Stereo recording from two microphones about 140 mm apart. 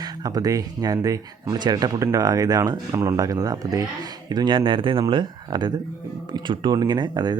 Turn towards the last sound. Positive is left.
turn(degrees=-30)  # may be behind; listen again after turning